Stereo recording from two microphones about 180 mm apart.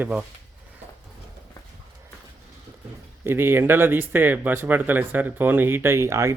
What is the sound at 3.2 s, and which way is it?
Speech, 15° right (ahead or behind).